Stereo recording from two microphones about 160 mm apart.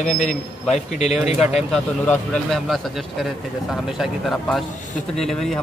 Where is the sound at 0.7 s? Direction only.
45° left (ahead or behind).